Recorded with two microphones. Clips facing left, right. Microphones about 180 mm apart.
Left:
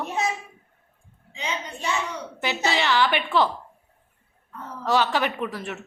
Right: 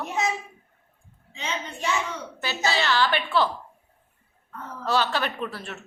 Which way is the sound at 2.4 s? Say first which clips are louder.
Left 1 dB; 15° left (ahead or behind).